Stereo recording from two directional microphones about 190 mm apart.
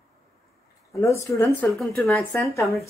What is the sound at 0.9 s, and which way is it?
Speech, 15° left (ahead or behind).